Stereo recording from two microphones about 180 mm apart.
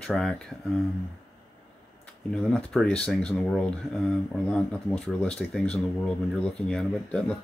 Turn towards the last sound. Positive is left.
turn(degrees=5)  # may be behind; listen again after turning